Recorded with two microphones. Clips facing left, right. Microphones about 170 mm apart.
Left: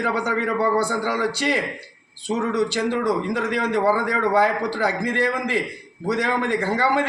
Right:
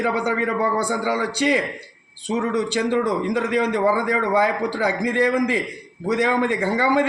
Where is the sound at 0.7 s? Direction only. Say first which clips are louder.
Even; 15° right (ahead or behind).